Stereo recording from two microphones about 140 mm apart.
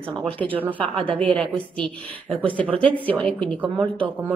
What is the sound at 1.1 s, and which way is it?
A woman's voice, 10° left (ahead or behind).